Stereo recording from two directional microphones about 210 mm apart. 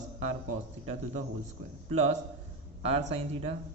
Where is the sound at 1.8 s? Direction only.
30° right (ahead or behind).